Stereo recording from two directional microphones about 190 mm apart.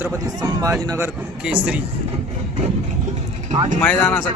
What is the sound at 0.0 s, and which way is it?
Speech, 15° right (ahead or behind).